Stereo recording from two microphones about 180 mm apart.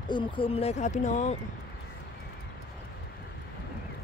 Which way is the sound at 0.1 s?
30° left (ahead or behind).